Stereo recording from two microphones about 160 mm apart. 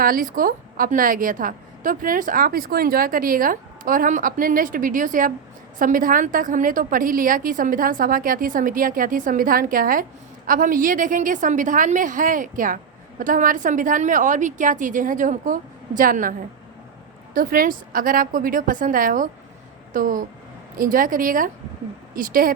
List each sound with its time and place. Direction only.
0.0 s a woman's voice: 60° right (ahead or behind)
17.3 s a woman's voice: 60° right (ahead or behind)